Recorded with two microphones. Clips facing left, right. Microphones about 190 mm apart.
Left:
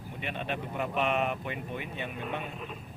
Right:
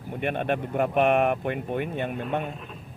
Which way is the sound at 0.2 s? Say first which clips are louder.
Right 9 dB; 55° right (ahead or behind).